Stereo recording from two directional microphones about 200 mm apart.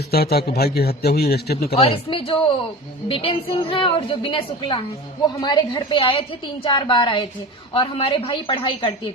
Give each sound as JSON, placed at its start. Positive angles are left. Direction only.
{"t": 0.1, "sound": "a man's voice", "side_deg": 50}
{"t": 1.7, "sound": "a woman's voice", "side_deg": 30}